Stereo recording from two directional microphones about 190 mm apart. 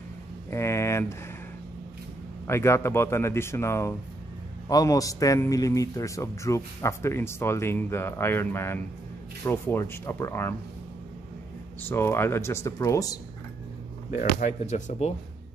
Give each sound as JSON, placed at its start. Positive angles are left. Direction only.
{"t": 0.5, "sound": "a sound", "side_deg": 15}
{"t": 2.4, "sound": "a man's voice", "side_deg": 15}
{"t": 11.9, "sound": "a man's voice", "side_deg": 10}
{"t": 14.1, "sound": "speech", "side_deg": 40}